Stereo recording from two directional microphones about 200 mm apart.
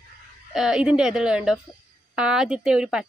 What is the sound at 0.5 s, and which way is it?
A woman's voice, 5° right (ahead or behind).